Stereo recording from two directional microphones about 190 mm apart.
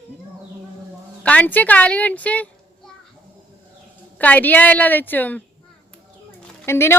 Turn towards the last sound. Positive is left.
turn(degrees=15)  # may be behind; listen again after turning